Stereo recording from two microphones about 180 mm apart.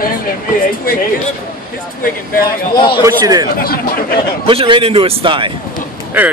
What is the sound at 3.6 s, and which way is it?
Speech, 55° left (ahead or behind).